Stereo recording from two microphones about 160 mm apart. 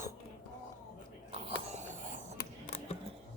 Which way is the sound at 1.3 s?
35° right (ahead or behind).